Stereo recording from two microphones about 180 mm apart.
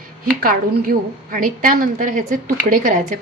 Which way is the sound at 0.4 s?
50° right (ahead or behind).